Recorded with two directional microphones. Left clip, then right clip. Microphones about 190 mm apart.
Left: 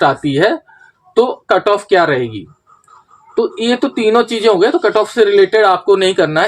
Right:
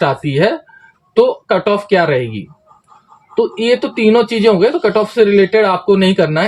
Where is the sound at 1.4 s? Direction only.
45° left (ahead or behind).